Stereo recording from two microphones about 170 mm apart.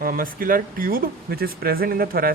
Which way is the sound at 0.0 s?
60° right (ahead or behind).